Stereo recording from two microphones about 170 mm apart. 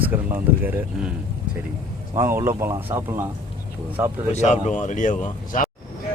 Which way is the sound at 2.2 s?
15° right (ahead or behind).